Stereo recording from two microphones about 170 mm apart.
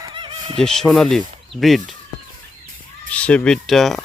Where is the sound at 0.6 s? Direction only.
Centre (ahead or behind).